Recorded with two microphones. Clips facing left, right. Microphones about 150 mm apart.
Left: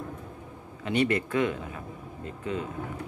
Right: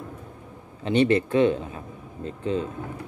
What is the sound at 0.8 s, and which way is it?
Speech, 30° right (ahead or behind).